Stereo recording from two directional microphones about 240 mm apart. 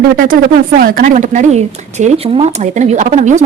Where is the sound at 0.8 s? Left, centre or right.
Right.